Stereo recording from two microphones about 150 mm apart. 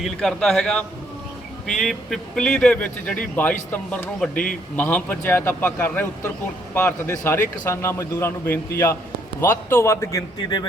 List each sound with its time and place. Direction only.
0.0 s a man's voice: 5° left (ahead or behind); by 10.7 s 25° left (ahead or behind)